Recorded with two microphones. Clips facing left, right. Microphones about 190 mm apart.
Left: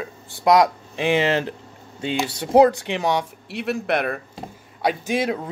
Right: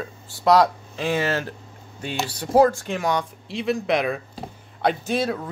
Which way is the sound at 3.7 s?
5° left (ahead or behind).